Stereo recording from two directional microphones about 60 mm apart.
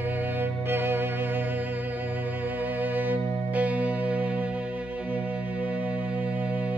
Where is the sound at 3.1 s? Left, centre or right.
Right.